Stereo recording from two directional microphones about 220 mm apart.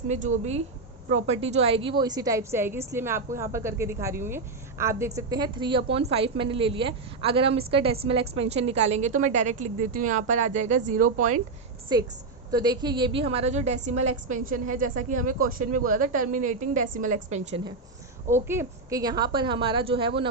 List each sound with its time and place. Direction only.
1.1 s a woman's voice: 30° right (ahead or behind)
11.9 s a woman's voice: 15° right (ahead or behind)
18.3 s a woman's voice: 10° right (ahead or behind)